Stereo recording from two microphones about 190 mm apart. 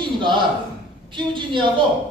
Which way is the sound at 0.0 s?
25° right (ahead or behind).